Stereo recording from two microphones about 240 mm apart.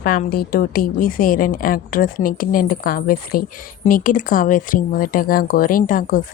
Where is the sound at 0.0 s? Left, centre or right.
Left.